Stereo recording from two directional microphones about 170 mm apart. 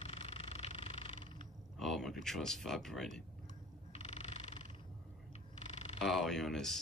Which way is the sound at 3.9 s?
40° left (ahead or behind).